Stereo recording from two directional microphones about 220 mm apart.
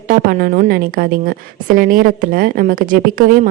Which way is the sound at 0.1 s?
40° right (ahead or behind).